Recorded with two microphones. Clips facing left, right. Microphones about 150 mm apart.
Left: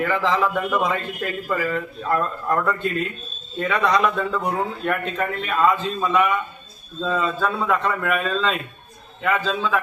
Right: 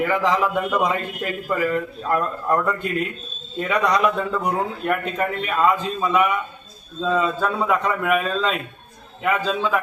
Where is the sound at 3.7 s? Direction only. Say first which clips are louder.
Even; 10° right (ahead or behind).